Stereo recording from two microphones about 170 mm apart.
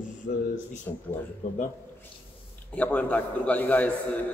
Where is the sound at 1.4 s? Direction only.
45° left (ahead or behind).